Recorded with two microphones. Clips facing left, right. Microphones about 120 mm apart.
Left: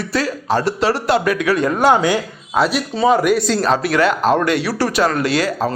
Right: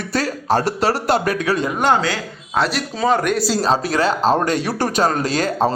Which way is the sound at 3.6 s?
35° right (ahead or behind).